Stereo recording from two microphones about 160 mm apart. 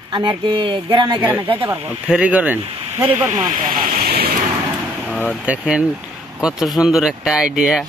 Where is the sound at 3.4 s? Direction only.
60° right (ahead or behind).